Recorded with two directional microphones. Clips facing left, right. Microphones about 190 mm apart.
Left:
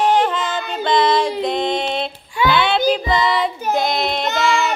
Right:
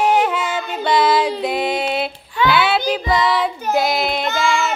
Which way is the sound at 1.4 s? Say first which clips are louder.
Even; 5° right (ahead or behind).